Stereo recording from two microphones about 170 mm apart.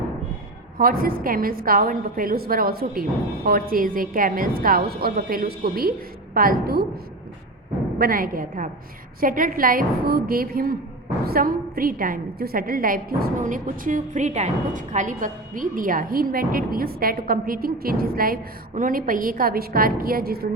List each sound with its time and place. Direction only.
0.8 s a woman's voice: 60° right (ahead or behind)
7.9 s a woman's voice: 60° right (ahead or behind)